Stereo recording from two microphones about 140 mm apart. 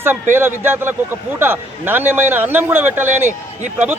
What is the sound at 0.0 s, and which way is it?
A man's voice, 15° right (ahead or behind).